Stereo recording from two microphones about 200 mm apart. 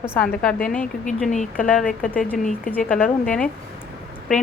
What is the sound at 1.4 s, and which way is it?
Speech, 45° left (ahead or behind).